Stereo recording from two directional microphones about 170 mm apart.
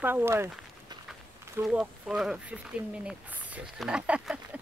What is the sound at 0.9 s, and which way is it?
Run, 25° right (ahead or behind).